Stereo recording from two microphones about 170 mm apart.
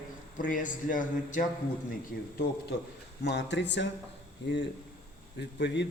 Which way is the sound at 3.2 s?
90° left.